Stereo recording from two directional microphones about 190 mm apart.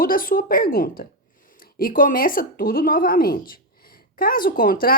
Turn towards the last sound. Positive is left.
turn(degrees=50)  # may be behind; listen again after turning